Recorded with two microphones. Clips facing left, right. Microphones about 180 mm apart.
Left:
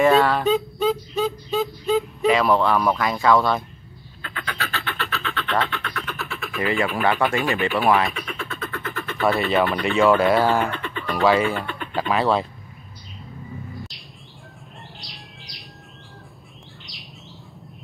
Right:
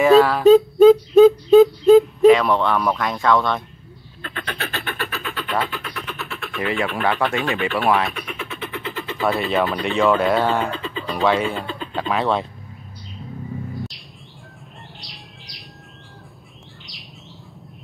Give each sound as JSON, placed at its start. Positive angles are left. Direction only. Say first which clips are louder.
{"t": 0.0, "sound": "speech", "louder": "right 4 dB", "side_deg": 0}
{"t": 0.5, "sound": "a sound", "louder": "right 11 dB", "side_deg": -50}
{"t": 2.2, "sound": "speech", "louder": "right 5 dB", "side_deg": 0}
{"t": 4.6, "sound": "a sound", "louder": "even", "side_deg": -20}
{"t": 5.1, "sound": "speech", "louder": "left 1 dB", "side_deg": -10}
{"t": 10.6, "sound": "speech", "louder": "right 1 dB", "side_deg": -30}
{"t": 11.1, "sound": "speech", "louder": "left 1 dB", "side_deg": 0}
{"t": 11.5, "sound": "speech", "louder": "right 1 dB", "side_deg": -30}
{"t": 11.9, "sound": "speech", "louder": "left 1 dB", "side_deg": 0}
{"t": 15.0, "sound": "bird", "louder": "even", "side_deg": 0}